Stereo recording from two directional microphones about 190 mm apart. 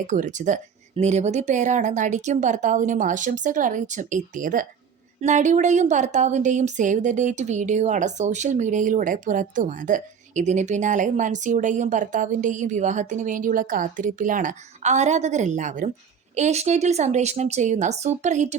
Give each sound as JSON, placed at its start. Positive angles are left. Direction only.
{"t": 0.1, "sound": "speech", "side_deg": -40}